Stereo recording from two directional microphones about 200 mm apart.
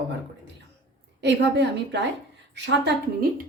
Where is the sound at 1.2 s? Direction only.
60° right (ahead or behind).